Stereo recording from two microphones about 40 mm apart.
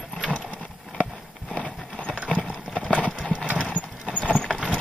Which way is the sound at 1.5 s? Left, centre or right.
Centre.